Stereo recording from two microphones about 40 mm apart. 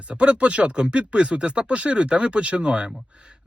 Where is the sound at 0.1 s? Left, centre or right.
Right.